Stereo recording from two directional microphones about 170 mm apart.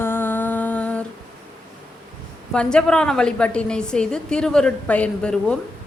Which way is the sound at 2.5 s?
5° left (ahead or behind).